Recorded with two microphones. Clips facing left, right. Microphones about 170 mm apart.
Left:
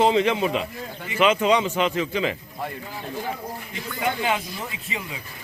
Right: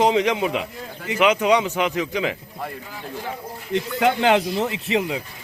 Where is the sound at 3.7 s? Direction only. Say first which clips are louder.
Right 8 dB; 80° right.